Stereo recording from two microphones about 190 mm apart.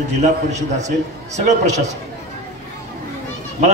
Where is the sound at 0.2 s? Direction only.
35° right (ahead or behind).